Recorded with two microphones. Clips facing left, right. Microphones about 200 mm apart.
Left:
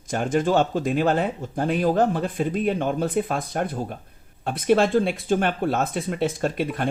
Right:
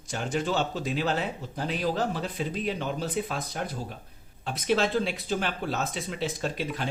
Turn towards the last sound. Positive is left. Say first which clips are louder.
# left 6 dB
turn(degrees=55)  # may be behind; listen again after turning